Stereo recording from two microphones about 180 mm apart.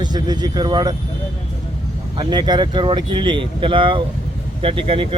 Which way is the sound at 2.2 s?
25° right (ahead or behind).